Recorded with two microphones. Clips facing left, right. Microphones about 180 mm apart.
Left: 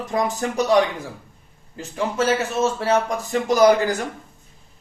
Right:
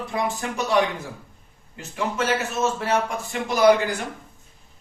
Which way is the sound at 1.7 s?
35° left (ahead or behind).